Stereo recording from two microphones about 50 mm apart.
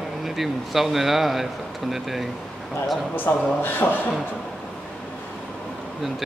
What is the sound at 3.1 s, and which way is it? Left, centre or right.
Speech, left.